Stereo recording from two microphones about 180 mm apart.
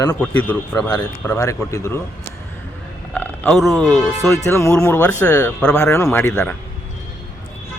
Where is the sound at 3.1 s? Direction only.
10° left (ahead or behind).